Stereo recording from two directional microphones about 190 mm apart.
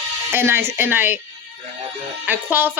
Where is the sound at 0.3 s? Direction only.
10° right (ahead or behind).